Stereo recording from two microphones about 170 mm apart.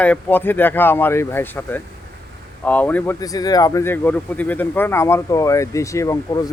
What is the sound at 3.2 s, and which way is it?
Speech, 20° left (ahead or behind).